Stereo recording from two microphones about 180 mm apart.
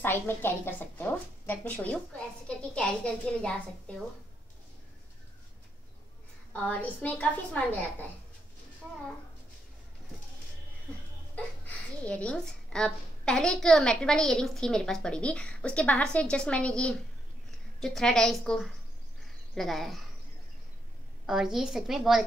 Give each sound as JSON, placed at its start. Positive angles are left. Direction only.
{"t": 0.0, "sound": "a woman's voice", "side_deg": 10}
{"t": 6.5, "sound": "a woman's voice", "side_deg": 10}
{"t": 11.3, "sound": "a woman's voice", "side_deg": 10}
{"t": 21.3, "sound": "a woman's voice", "side_deg": 0}